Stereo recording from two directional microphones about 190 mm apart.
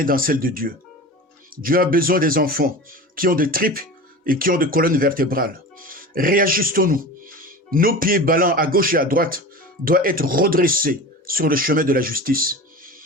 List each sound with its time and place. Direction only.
0.0 s speech: 50° right (ahead or behind)